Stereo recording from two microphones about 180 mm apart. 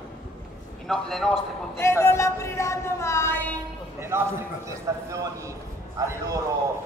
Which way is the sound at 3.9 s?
15° right (ahead or behind).